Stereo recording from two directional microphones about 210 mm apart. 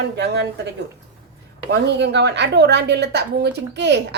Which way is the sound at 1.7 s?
55° right (ahead or behind).